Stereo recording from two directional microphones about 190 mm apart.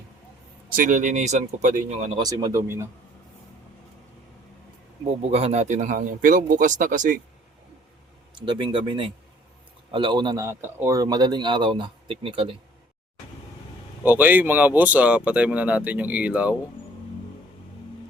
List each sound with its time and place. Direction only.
0.8 s speech: 45° right (ahead or behind)
2.1 s speech: 20° right (ahead or behind)
5.3 s speech: 35° right (ahead or behind)
8.4 s speech: 25° right (ahead or behind)
14.0 s speech: 10° right (ahead or behind)